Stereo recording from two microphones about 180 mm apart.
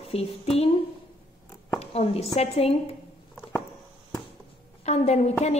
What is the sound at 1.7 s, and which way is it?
A woman's voice, 35° left (ahead or behind).